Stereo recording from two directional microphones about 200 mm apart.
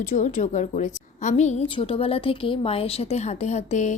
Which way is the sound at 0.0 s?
35° left (ahead or behind).